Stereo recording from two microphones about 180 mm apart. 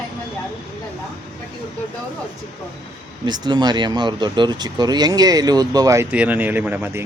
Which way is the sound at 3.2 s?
25° right (ahead or behind).